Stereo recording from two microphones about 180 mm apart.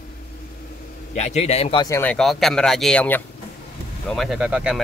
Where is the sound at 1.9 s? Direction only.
10° left (ahead or behind).